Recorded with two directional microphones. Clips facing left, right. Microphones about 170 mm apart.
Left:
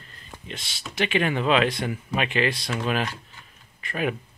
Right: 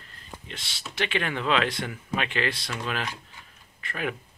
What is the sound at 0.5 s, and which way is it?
Speech, 15° left (ahead or behind).